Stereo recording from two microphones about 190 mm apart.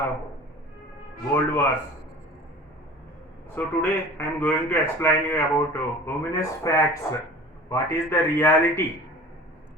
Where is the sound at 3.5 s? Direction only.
10° left (ahead or behind).